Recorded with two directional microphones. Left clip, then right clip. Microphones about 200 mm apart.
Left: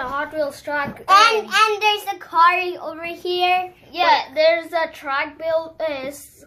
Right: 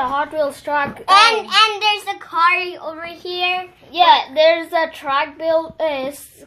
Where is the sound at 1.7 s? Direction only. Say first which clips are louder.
Right 1 dB; 30° left (ahead or behind).